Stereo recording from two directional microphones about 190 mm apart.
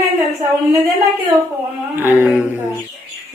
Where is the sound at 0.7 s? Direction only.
20° right (ahead or behind).